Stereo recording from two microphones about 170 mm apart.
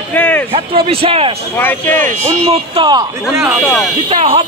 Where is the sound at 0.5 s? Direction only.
30° right (ahead or behind).